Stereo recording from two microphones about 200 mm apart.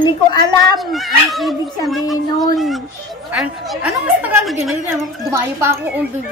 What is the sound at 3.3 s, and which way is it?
A woman's voice, 5° right (ahead or behind).